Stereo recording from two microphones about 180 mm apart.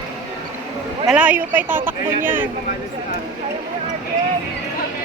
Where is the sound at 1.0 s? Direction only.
10° right (ahead or behind).